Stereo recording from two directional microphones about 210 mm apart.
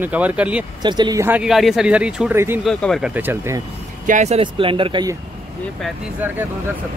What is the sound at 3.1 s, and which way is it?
Speech, 10° right (ahead or behind).